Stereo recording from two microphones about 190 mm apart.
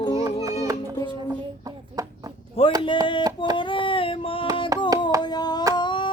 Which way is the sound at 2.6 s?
30° left (ahead or behind).